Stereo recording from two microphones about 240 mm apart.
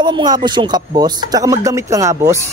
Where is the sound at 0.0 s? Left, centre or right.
Centre.